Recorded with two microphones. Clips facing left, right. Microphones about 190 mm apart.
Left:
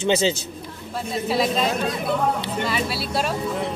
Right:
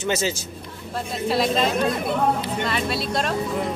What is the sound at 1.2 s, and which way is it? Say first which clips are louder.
Speech: right 1 dB; centre (ahead or behind).